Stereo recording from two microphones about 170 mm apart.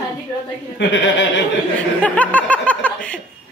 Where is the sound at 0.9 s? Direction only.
90° left.